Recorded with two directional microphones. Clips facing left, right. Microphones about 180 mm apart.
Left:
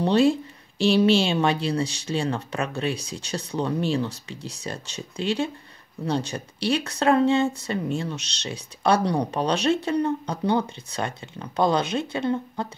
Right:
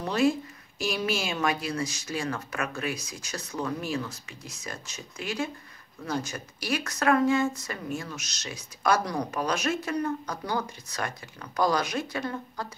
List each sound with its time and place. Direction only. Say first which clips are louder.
0.0 s speech: left 5 dB; 30° left (ahead or behind)